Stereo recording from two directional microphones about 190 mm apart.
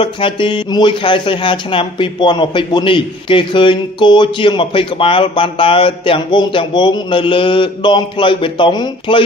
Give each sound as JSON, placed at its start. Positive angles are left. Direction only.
{"t": 0.0, "sound": "speech", "side_deg": 25}